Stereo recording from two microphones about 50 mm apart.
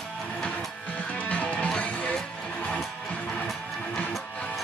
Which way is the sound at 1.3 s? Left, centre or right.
Left.